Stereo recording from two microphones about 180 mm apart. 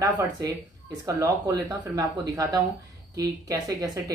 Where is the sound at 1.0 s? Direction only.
20° right (ahead or behind).